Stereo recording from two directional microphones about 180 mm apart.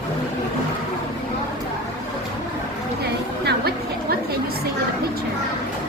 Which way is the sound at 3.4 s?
60° right (ahead or behind).